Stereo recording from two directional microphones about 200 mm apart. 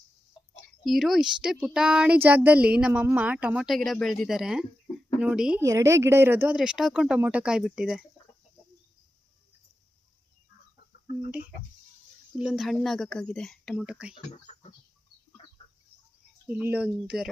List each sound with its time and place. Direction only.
0.5 s a woman's voice: centre (ahead or behind)
12.4 s a woman's voice: centre (ahead or behind)
14.1 s speech: 30° left (ahead or behind)
15.4 s chicken: 30° left (ahead or behind)
16.5 s speech: 10° right (ahead or behind)